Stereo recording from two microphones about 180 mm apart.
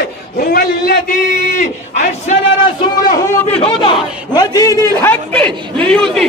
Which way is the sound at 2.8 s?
20° left (ahead or behind).